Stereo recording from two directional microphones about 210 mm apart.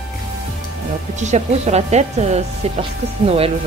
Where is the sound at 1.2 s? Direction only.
35° right (ahead or behind).